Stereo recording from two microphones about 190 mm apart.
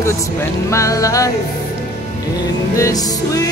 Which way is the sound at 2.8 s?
20° left (ahead or behind).